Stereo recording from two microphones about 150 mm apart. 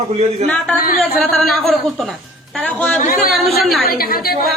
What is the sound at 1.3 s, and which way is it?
Speech, centre (ahead or behind).